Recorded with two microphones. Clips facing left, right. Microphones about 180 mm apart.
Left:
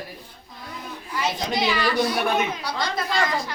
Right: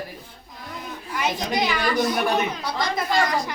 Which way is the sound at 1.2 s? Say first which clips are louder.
Right 1 dB; 15° right (ahead or behind).